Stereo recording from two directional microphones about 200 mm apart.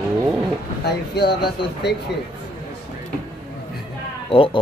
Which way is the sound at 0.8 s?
55° left (ahead or behind).